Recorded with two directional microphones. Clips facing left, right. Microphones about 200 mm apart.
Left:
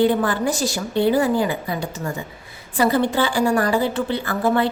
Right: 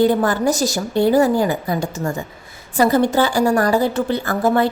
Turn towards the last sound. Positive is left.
turn(degrees=-45)  # may be behind; listen again after turning